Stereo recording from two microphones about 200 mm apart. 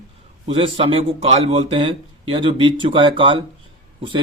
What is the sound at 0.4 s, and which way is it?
Speech, 25° right (ahead or behind).